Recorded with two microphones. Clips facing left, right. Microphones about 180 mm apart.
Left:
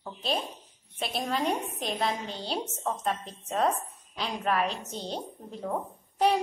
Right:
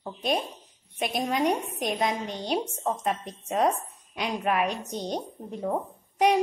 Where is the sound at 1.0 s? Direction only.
15° right (ahead or behind).